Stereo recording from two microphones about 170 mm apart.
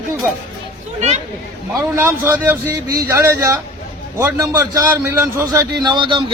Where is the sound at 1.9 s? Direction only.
10° right (ahead or behind).